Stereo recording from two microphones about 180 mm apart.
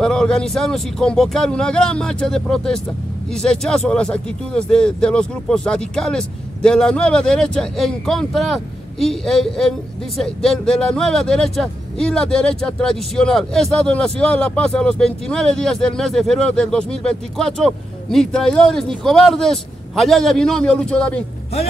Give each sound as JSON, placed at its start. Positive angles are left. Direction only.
{"t": 0.0, "sound": "speech", "side_deg": 5}